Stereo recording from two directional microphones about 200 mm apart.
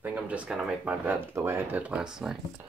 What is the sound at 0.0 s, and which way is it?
Speech, 5° right (ahead or behind).